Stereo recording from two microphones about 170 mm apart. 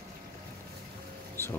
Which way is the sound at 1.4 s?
15° left (ahead or behind).